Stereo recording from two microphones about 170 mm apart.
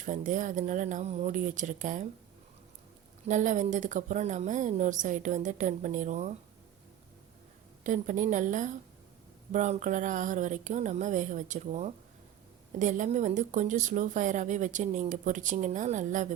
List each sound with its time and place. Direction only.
0.0 s speech: 50° right (ahead or behind)
3.2 s speech: 45° right (ahead or behind)
7.9 s speech: 50° right (ahead or behind)